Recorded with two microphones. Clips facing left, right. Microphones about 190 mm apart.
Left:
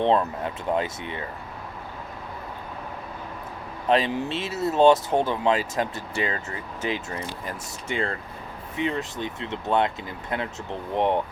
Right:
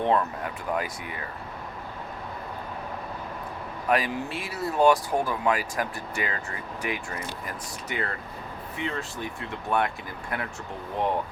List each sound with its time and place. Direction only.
0.0 s speech: 25° left (ahead or behind)
3.8 s speech: 25° left (ahead or behind)